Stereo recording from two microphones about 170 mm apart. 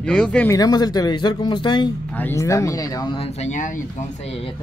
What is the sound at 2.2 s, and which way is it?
Speech, 15° left (ahead or behind).